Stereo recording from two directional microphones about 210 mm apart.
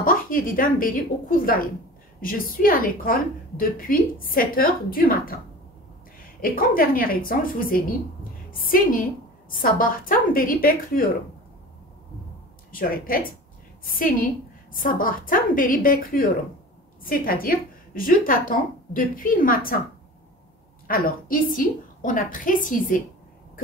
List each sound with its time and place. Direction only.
0.0 s a woman's voice: 40° left (ahead or behind)
6.4 s a woman's voice: 45° left (ahead or behind)
12.7 s a woman's voice: 45° left (ahead or behind)
20.8 s a woman's voice: 40° left (ahead or behind)